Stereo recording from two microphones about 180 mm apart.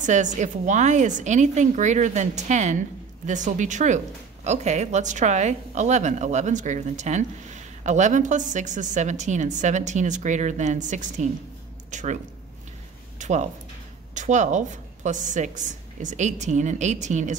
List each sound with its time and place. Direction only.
0.0 s a woman's voice: 40° right (ahead or behind)
13.2 s a woman's voice: 40° right (ahead or behind)